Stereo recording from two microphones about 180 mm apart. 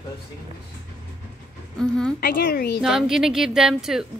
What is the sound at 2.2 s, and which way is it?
Speech, 60° left (ahead or behind).